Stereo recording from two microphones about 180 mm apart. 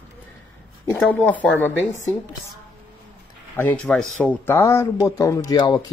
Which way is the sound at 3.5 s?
10° left (ahead or behind).